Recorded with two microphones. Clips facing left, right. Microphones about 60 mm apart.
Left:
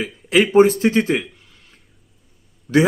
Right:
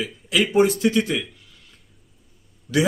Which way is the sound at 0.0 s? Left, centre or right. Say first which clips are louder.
Left 5 dB; left.